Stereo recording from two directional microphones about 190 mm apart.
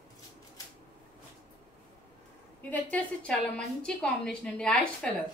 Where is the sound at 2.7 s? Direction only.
5° left (ahead or behind).